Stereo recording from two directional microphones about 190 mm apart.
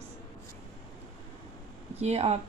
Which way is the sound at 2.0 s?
35° right (ahead or behind).